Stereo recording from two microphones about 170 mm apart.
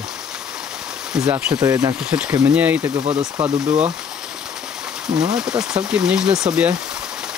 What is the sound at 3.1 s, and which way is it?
Speech, 25° right (ahead or behind).